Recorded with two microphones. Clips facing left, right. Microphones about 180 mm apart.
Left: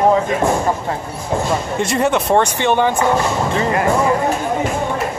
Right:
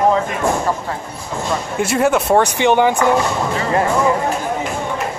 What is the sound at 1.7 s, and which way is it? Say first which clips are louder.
Speech: right 2 dB; 5° right (ahead or behind).